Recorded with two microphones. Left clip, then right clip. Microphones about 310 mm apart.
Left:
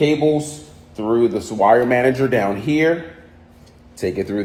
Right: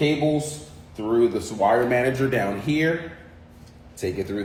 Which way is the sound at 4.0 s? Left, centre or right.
Left.